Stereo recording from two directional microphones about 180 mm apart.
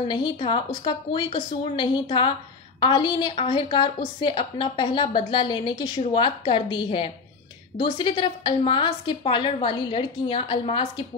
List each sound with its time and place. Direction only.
0.1 s a woman's voice: 25° left (ahead or behind)